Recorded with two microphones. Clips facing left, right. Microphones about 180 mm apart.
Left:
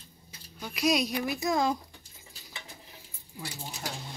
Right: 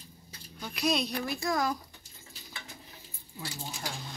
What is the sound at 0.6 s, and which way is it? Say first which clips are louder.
Speech: left 3 dB; 5° left (ahead or behind).